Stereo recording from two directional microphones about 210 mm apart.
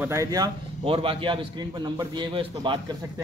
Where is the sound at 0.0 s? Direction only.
15° right (ahead or behind).